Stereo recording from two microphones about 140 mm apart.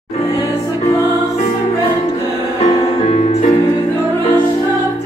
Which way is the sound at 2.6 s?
50° left (ahead or behind).